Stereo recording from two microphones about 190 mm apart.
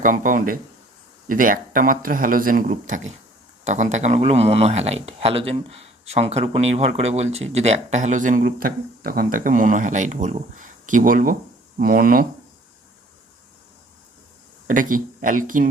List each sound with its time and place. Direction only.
0.0 s speech: 45° right (ahead or behind)
14.7 s speech: 45° right (ahead or behind)